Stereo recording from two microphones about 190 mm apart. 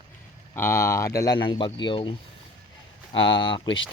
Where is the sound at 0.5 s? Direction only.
15° left (ahead or behind).